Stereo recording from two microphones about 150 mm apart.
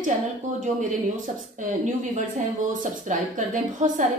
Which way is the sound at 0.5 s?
60° right (ahead or behind).